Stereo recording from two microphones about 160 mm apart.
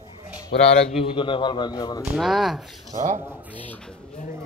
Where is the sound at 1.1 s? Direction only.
30° left (ahead or behind).